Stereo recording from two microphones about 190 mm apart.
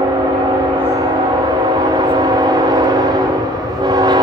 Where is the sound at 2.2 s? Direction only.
20° right (ahead or behind).